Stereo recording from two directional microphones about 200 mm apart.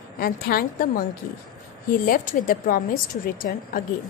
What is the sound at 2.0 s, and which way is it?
A woman's voice, 45° left (ahead or behind).